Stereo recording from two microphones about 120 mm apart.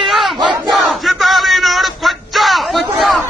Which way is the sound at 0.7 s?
Centre (ahead or behind).